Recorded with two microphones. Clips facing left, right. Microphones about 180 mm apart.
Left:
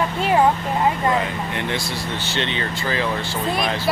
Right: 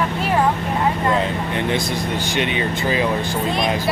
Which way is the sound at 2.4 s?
15° right (ahead or behind).